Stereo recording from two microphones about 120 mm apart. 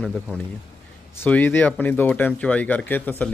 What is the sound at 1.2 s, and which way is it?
Speech, 15° left (ahead or behind).